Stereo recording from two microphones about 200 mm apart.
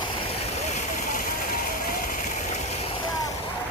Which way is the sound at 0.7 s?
40° left (ahead or behind).